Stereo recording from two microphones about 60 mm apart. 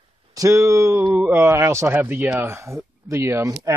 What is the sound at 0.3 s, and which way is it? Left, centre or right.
Speech, right.